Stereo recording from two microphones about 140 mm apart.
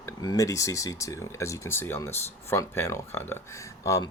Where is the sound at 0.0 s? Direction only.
25° left (ahead or behind).